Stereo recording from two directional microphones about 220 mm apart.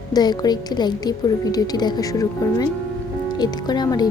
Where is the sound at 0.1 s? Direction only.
20° left (ahead or behind).